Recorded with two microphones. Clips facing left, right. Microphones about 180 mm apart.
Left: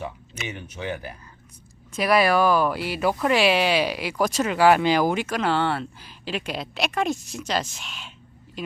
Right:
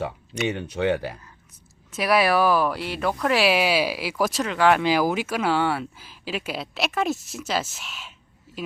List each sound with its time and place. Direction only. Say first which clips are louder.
0.4 s speech: right 8 dB; 70° right (ahead or behind)
1.9 s speech: left 1 dB; centre (ahead or behind)